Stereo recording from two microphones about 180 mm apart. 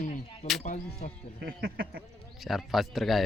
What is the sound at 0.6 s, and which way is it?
Speech, 45° left (ahead or behind).